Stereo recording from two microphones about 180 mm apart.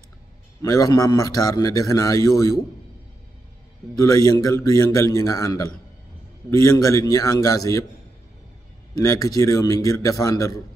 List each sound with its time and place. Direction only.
0.6 s a man's voice: 20° left (ahead or behind)
4.0 s a man's voice: 15° left (ahead or behind)
8.9 s a man's voice: 20° left (ahead or behind)